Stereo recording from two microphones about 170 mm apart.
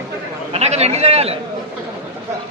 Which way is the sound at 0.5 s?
40° right (ahead or behind).